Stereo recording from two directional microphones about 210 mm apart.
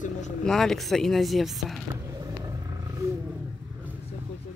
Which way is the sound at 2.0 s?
15° right (ahead or behind).